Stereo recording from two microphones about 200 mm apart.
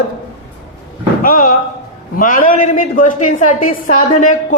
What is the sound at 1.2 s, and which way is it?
A man's voice, 45° left (ahead or behind).